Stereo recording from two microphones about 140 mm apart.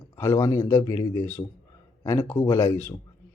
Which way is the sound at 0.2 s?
20° left (ahead or behind).